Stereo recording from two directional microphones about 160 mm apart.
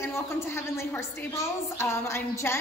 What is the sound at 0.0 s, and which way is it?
A woman's voice, 15° left (ahead or behind).